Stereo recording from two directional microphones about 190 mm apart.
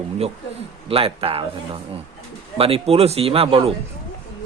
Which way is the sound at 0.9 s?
30° right (ahead or behind).